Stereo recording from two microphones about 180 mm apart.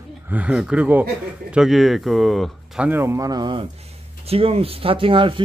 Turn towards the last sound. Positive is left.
turn(degrees=-30)  # may be behind; listen again after turning